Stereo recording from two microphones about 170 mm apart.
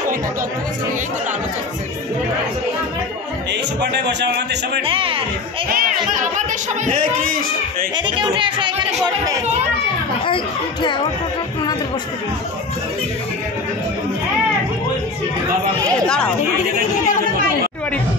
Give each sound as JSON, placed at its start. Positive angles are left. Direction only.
{"t": 3.8, "sound": "speech", "side_deg": -85}
{"t": 4.8, "sound": "speech", "side_deg": -30}
{"t": 5.7, "sound": "a sound", "side_deg": -55}
{"t": 7.9, "sound": "speech", "side_deg": -30}
{"t": 10.2, "sound": "speech", "side_deg": 30}